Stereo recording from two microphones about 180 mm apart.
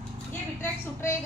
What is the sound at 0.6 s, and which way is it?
Speech, 15° left (ahead or behind).